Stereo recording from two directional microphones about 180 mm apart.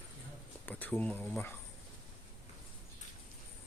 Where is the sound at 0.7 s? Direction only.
10° left (ahead or behind).